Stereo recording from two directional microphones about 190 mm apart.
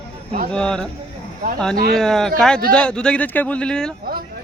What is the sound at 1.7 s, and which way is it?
Speech, 50° right (ahead or behind).